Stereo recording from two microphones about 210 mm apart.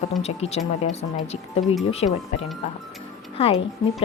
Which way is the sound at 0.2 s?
30° left (ahead or behind).